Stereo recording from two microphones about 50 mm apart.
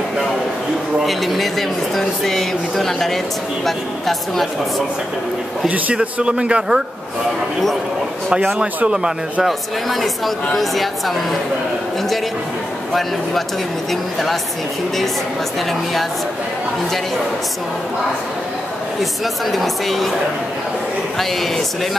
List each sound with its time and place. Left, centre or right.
0.9 s speech: centre
6.1 s speech: right
8.5 s speech: centre
9.5 s speech: centre
19.5 s speech: centre